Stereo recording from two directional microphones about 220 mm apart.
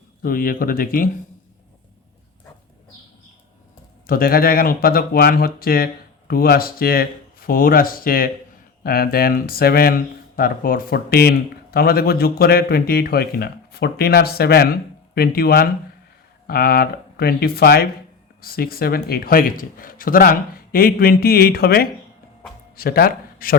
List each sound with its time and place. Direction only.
0.2 s speech: 40° left (ahead or behind)
4.0 s a man's voice: 40° left (ahead or behind)